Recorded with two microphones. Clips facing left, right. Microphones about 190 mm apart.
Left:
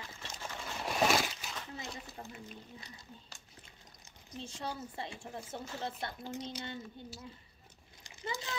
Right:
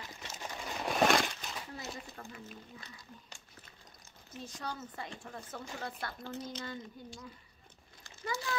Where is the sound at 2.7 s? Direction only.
20° left (ahead or behind).